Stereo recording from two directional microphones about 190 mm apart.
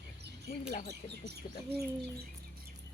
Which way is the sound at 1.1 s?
60° right (ahead or behind).